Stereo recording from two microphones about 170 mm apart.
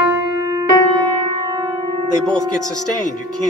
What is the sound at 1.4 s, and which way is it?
Music, 25° right (ahead or behind).